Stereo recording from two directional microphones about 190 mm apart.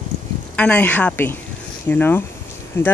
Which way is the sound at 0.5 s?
5° left (ahead or behind).